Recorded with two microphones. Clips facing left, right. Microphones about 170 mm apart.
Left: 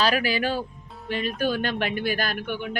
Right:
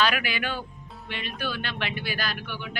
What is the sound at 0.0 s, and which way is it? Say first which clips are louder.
A man's voice: left 3 dB; 35° left (ahead or behind).